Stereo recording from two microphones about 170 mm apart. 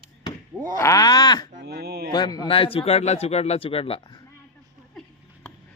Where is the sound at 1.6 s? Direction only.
70° right (ahead or behind).